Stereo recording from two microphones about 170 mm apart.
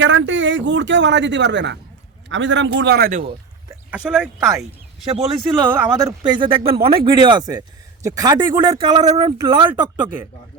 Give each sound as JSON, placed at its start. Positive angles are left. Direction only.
{"t": 0.0, "sound": "speech", "side_deg": -90}
{"t": 3.7, "sound": "speech", "side_deg": -5}
{"t": 5.1, "sound": "speech", "side_deg": -25}
{"t": 5.7, "sound": "speech", "side_deg": -15}
{"t": 6.8, "sound": "speech", "side_deg": -30}